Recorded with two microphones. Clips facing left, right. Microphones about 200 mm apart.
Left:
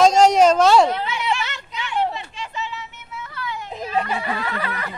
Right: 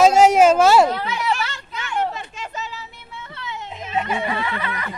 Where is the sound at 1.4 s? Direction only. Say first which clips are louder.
Right 1 dB; 20° left (ahead or behind).